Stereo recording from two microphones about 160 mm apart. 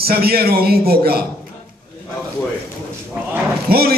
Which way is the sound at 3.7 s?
70° right (ahead or behind).